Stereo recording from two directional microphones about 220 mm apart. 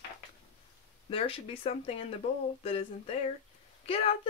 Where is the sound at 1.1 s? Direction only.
25° left (ahead or behind).